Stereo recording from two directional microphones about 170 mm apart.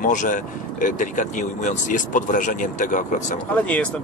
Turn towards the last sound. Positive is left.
turn(degrees=10)  # may be behind; listen again after turning